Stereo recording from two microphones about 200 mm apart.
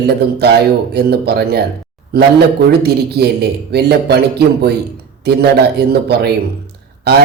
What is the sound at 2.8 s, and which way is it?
A man's voice, 55° right (ahead or behind).